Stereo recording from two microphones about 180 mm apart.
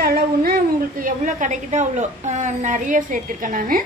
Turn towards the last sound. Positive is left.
turn(degrees=-50)  # may be behind; listen again after turning